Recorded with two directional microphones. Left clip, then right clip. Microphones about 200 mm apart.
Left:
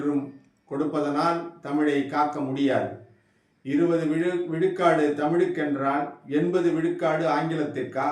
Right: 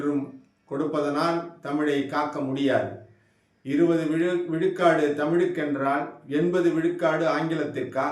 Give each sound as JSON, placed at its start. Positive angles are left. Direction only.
{"t": 0.9, "sound": "a man's voice", "side_deg": -10}